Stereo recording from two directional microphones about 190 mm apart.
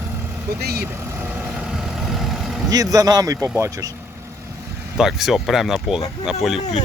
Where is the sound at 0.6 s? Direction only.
55° right (ahead or behind).